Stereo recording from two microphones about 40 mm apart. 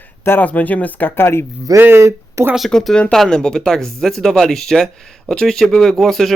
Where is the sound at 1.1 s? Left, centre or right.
Left.